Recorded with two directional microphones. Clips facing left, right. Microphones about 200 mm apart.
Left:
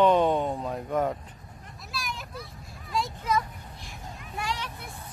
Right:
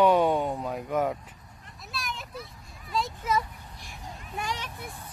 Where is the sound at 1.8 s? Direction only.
Centre (ahead or behind).